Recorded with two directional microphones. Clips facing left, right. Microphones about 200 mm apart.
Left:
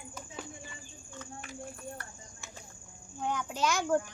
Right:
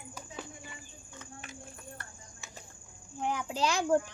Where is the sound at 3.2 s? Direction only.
30° right (ahead or behind).